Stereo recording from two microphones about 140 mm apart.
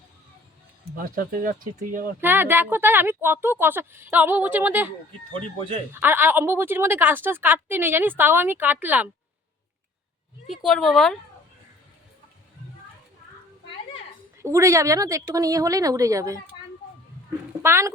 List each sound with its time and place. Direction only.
0.9 s speech: 80° right
2.2 s a woman's voice: 15° right (ahead or behind)
10.4 s speech: centre (ahead or behind)
14.4 s a woman's voice: 20° right (ahead or behind)
17.6 s a woman's voice: 20° right (ahead or behind)